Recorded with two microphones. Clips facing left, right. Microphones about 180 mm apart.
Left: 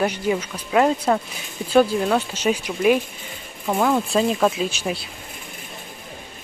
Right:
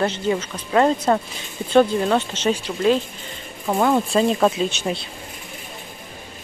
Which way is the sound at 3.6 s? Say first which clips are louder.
Right 1 dB; centre (ahead or behind).